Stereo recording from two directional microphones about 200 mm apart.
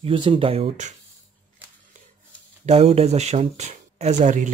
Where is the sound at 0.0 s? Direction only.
25° right (ahead or behind).